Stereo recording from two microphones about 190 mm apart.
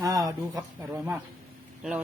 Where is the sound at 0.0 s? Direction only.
20° right (ahead or behind).